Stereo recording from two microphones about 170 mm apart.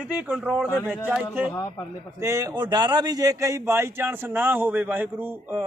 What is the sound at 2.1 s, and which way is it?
A man's voice, 20° right (ahead or behind).